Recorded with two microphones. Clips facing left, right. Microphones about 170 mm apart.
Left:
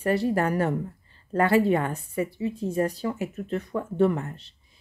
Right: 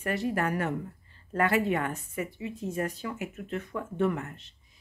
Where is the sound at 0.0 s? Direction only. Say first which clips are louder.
Left 6 dB; 35° left (ahead or behind).